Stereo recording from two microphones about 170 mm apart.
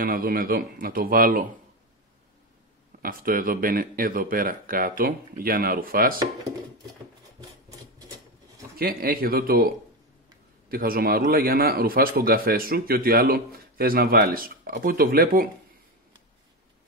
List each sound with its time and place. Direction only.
0.0 s a man's voice: 60° right (ahead or behind)
3.0 s a man's voice: 55° right (ahead or behind)
8.7 s a man's voice: 60° right (ahead or behind)